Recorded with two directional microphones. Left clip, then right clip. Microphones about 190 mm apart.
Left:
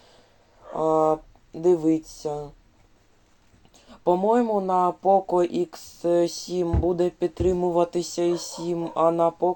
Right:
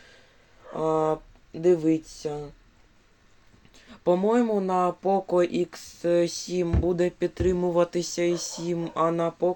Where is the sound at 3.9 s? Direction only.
20° right (ahead or behind).